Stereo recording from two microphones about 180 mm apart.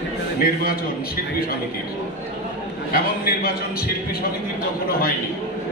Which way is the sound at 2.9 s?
55° left (ahead or behind).